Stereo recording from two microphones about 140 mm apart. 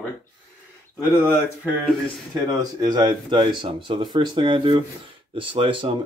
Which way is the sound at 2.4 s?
25° right (ahead or behind).